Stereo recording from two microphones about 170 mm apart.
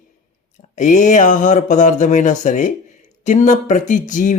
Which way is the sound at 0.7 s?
45° left (ahead or behind).